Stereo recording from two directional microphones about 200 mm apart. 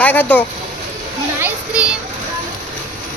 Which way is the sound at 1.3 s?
10° right (ahead or behind).